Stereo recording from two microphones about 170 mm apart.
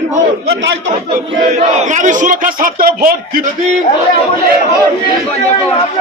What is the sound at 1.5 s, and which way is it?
Speech, 45° right (ahead or behind).